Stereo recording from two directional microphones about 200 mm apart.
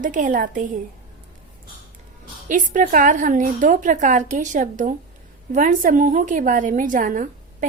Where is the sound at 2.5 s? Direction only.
40° right (ahead or behind).